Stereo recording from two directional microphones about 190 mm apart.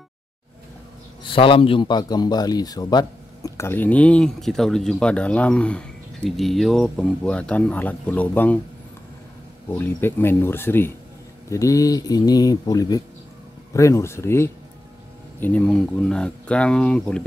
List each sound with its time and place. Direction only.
1.2 s a man's voice: 25° left (ahead or behind); by 8.5 s 10° left (ahead or behind)
9.7 s a man's voice: 10° left (ahead or behind)